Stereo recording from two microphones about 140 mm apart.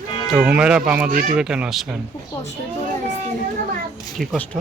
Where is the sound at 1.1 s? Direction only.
70° right (ahead or behind).